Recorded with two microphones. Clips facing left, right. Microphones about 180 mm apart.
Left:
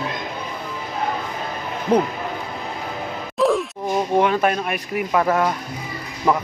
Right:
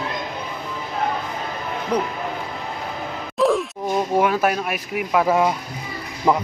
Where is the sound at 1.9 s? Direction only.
25° left (ahead or behind).